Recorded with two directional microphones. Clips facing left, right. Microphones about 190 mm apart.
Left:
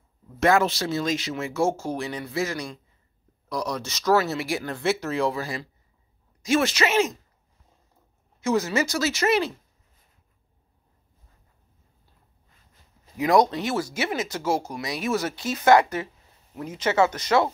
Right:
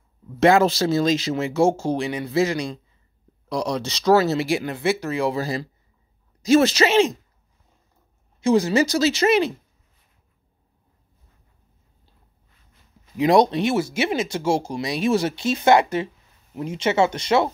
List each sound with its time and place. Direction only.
0.4 s speech: 30° right (ahead or behind)
4.6 s speech: 10° right (ahead or behind)
4.8 s speech: centre (ahead or behind)
5.3 s speech: 35° right (ahead or behind)
8.4 s speech: 30° right (ahead or behind)
13.1 s speech: 30° right (ahead or behind)